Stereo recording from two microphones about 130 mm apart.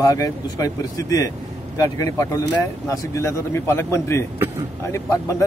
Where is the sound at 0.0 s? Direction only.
30° left (ahead or behind).